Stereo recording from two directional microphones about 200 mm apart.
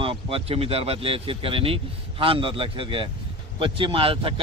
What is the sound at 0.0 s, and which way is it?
A man's voice, 25° right (ahead or behind).